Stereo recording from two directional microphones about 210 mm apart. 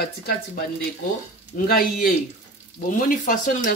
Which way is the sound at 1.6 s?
40° left (ahead or behind).